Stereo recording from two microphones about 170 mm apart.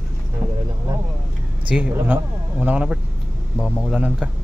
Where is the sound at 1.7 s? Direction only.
5° right (ahead or behind).